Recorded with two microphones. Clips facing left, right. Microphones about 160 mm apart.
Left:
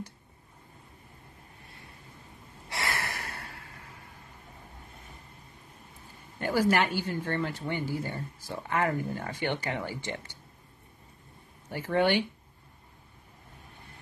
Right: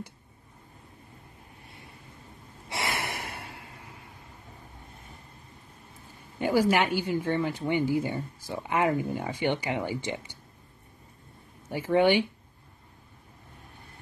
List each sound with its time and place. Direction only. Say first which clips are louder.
2.7 s gasp: right 2 dB; 20° right (ahead or behind)
6.4 s speech: right 2 dB; 15° right (ahead or behind)
11.7 s speech: right 4 dB; 15° right (ahead or behind)